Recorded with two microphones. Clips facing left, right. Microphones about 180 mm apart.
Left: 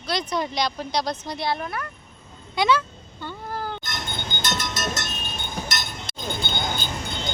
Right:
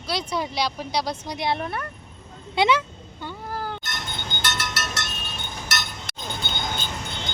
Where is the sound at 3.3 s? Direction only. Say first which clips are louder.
Even; 5° right (ahead or behind).